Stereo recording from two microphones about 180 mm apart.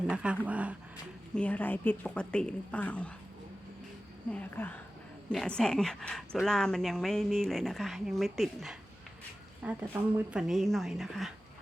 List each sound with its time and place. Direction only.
0.1 s a woman's voice: 5° right (ahead or behind)
1.4 s speech: 10° left (ahead or behind)
4.3 s a woman's voice: 10° left (ahead or behind)